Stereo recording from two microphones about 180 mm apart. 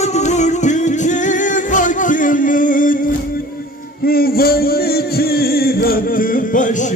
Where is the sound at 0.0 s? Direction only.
40° left (ahead or behind).